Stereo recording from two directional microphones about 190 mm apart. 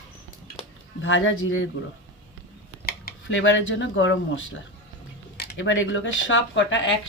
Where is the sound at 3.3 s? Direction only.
80° left.